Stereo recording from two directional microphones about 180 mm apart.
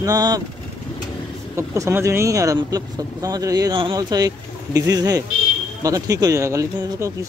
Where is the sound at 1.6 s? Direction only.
15° right (ahead or behind).